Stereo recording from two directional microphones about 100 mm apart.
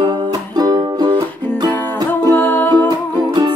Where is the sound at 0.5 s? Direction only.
45° right (ahead or behind).